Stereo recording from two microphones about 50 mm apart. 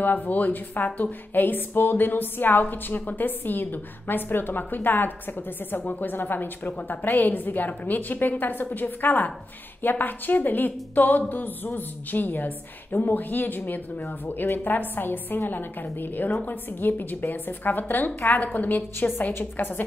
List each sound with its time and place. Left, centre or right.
0.0 s a woman's voice: left